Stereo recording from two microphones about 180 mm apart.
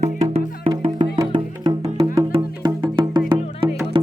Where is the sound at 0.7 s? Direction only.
30° right (ahead or behind).